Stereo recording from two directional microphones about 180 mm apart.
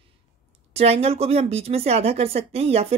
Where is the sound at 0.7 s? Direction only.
35° right (ahead or behind).